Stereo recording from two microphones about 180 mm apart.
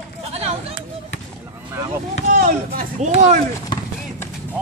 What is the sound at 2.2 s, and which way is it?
Speech, 50° right (ahead or behind).